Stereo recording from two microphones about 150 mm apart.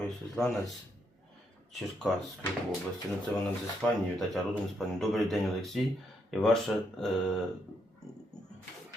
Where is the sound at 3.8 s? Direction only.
5° left (ahead or behind).